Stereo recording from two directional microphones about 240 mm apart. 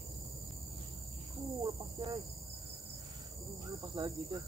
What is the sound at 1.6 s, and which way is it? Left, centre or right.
Speech, right.